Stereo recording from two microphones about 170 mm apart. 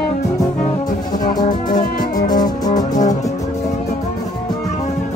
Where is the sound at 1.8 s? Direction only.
50° left (ahead or behind).